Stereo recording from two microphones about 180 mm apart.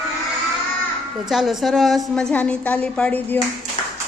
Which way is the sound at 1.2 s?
Centre (ahead or behind).